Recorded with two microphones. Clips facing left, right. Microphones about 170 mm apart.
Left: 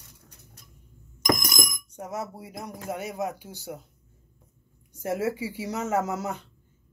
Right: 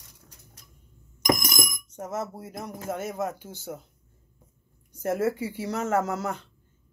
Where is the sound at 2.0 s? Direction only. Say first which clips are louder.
Right 2 dB; 10° left (ahead or behind).